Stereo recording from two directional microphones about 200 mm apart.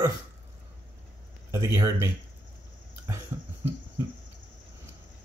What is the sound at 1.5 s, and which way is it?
Speech, 15° right (ahead or behind).